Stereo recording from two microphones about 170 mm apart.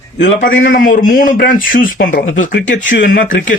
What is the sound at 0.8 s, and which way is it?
Speech, 55° left (ahead or behind).